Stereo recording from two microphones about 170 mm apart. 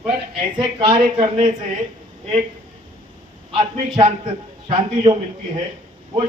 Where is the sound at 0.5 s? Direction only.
30° right (ahead or behind).